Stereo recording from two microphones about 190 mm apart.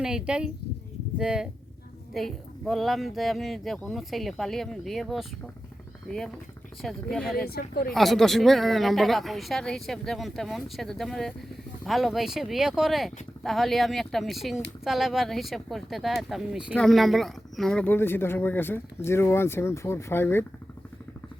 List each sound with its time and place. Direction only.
0.0 s speech: 5° right (ahead or behind)
7.4 s speech: 55° left (ahead or behind)
7.9 s speech: centre (ahead or behind)